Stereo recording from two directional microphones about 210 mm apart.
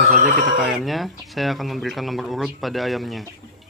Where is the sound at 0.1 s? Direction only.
40° right (ahead or behind).